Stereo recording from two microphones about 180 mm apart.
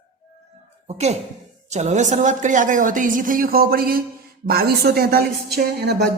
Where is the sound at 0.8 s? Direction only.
40° right (ahead or behind); by 6.0 s 65° right (ahead or behind).